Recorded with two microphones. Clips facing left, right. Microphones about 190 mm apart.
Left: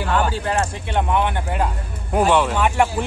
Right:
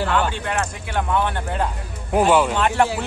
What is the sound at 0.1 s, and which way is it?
Speech, 35° left (ahead or behind).